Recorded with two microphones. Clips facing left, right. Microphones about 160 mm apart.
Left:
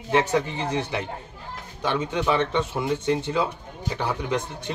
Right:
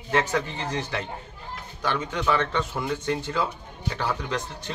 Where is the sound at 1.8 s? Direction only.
20° left (ahead or behind).